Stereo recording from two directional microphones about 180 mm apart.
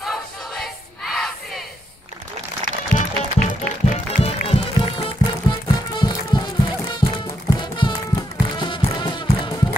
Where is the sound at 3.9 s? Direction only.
35° left (ahead or behind).